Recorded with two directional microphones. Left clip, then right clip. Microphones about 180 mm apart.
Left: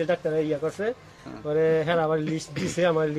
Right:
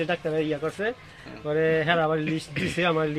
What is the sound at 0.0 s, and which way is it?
A man's voice, 15° left (ahead or behind).